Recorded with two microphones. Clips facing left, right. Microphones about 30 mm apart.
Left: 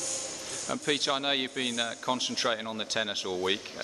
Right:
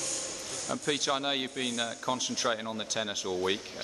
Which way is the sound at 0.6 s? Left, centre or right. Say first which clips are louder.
Left 1 dB; left.